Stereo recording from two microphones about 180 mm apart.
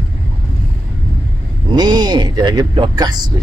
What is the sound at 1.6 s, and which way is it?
Speech, 25° right (ahead or behind).